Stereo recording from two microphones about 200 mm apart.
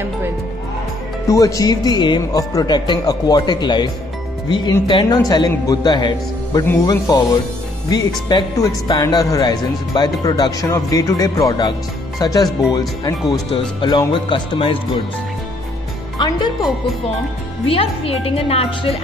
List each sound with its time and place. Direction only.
1.2 s speech: 15° left (ahead or behind)
8.3 s speech: 20° left (ahead or behind)
16.2 s music: 20° left (ahead or behind)
17.6 s speech: 30° left (ahead or behind)